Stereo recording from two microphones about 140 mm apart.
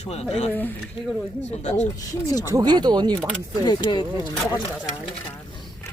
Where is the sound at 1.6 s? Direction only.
55° left (ahead or behind).